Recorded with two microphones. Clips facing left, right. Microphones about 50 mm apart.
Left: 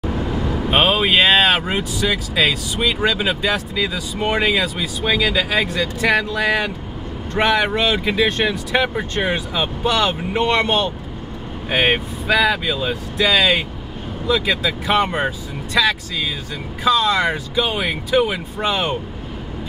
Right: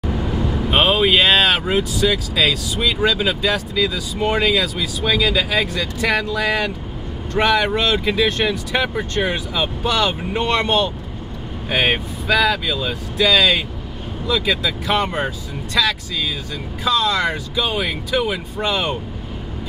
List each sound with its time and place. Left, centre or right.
0.1 s vehicle: left
0.5 s speech: centre